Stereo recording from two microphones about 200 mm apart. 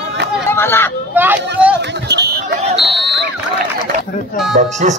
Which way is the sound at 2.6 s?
30° right (ahead or behind).